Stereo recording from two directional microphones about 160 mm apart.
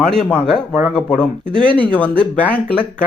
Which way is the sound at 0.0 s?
5° left (ahead or behind).